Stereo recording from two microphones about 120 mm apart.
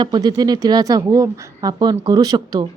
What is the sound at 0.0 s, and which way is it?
A woman's voice, 35° right (ahead or behind).